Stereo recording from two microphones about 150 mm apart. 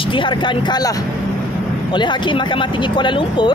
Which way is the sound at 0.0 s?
35° left (ahead or behind).